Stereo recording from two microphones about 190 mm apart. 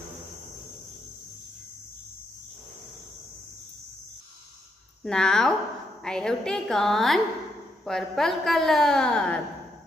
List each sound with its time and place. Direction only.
5.0 s a woman's voice: 5° left (ahead or behind)